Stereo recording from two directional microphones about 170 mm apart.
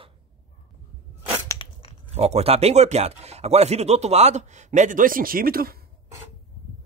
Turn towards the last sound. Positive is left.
turn(degrees=-60)  # may be behind; listen again after turning